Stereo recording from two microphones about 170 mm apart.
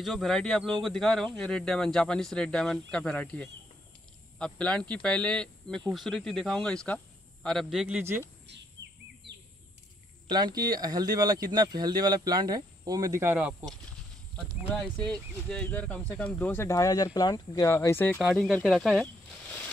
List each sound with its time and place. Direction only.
0.0 s a man's voice: centre (ahead or behind)
10.2 s speech: 25° right (ahead or behind); by 13.7 s 10° right (ahead or behind)
15.4 s speech: 5° left (ahead or behind)
18.2 s a man's voice: centre (ahead or behind)